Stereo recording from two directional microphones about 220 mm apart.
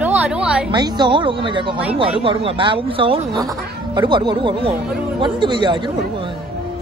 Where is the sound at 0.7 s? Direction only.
20° right (ahead or behind).